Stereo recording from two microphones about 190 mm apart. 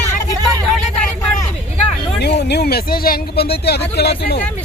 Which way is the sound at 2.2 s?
60° left (ahead or behind).